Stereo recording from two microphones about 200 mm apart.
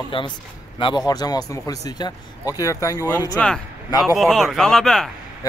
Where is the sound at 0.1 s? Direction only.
25° left (ahead or behind).